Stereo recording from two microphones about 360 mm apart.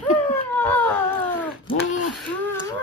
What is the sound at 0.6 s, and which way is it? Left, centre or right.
Baby cry, centre.